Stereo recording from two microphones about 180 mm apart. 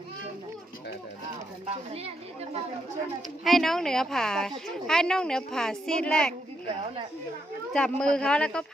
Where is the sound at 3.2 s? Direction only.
Centre (ahead or behind).